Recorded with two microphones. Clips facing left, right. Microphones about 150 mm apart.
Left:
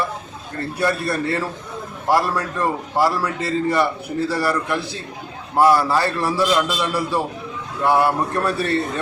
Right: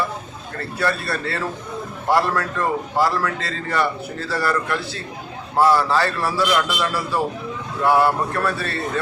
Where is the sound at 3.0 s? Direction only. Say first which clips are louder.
Left 2 dB; 10° left (ahead or behind).